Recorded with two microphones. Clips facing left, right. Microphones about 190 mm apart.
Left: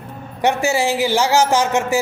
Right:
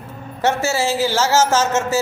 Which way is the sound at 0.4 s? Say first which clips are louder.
Left 1 dB; 15° left (ahead or behind).